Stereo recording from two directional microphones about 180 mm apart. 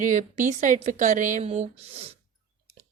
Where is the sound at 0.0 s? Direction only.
45° right (ahead or behind).